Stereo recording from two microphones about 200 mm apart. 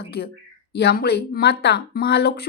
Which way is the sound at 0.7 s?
55° left (ahead or behind).